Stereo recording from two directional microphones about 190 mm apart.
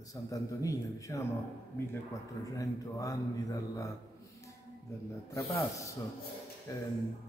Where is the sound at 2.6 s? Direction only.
20° left (ahead or behind).